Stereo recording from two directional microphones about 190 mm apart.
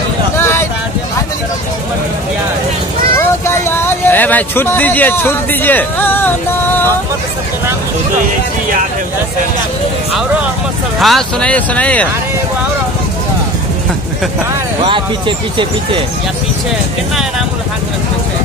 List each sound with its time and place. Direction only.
0.4 s vehicle: 10° left (ahead or behind)
3.2 s a sound: 15° left (ahead or behind)
11.0 s speech: centre (ahead or behind)
14.8 s speech: 25° right (ahead or behind)